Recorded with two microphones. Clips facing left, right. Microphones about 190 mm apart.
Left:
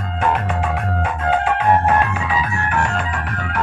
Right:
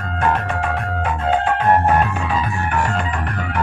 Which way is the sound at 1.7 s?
Centre (ahead or behind).